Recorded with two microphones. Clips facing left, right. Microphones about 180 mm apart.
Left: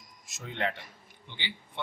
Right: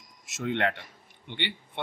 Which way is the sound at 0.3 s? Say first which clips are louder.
Right 6 dB; 70° right (ahead or behind).